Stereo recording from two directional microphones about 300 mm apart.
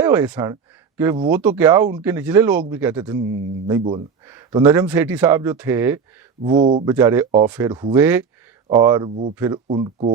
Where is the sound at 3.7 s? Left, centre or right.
Centre.